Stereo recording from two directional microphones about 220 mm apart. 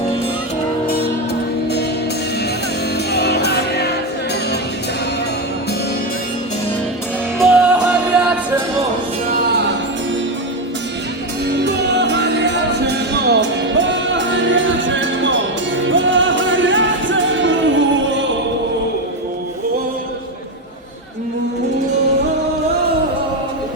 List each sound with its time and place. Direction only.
3.1 s music: 50° left (ahead or behind)
7.3 s music: centre (ahead or behind)
11.6 s music: 50° right (ahead or behind)